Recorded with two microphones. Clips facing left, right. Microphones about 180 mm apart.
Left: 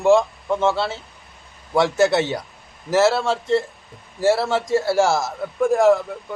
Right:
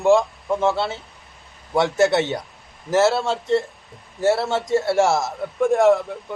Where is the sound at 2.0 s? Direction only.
Centre (ahead or behind).